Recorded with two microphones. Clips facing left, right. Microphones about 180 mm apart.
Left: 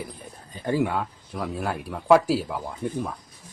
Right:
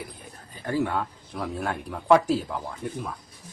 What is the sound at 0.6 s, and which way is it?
Speech, 15° left (ahead or behind).